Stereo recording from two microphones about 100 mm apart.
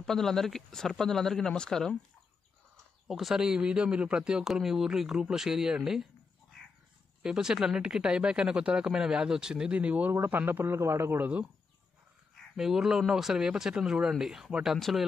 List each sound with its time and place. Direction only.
0.0 s a man's voice: 5° left (ahead or behind)
3.1 s a man's voice: centre (ahead or behind)
7.2 s speech: 5° right (ahead or behind)
10.1 s a man's voice: 25° right (ahead or behind)
12.5 s a man's voice: 5° right (ahead or behind)